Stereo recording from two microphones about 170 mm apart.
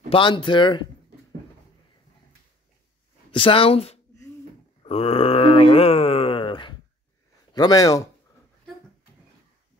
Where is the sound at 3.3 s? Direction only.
30° left (ahead or behind).